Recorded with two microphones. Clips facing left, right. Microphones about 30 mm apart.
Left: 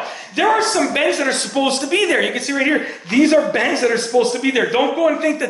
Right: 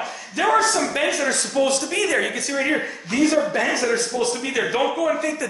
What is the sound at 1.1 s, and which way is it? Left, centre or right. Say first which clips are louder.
Speech: left 4 dB; left.